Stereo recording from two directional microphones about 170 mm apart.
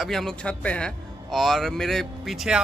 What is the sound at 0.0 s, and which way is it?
A man's voice, centre (ahead or behind).